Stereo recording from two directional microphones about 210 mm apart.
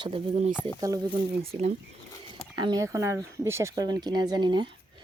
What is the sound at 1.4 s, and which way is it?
Speech, 30° right (ahead or behind).